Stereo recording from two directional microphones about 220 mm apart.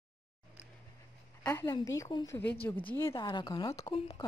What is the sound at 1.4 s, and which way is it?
Speech, 15° left (ahead or behind).